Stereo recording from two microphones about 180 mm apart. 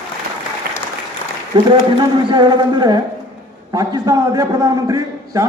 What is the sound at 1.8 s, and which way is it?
A man's voice, 25° right (ahead or behind).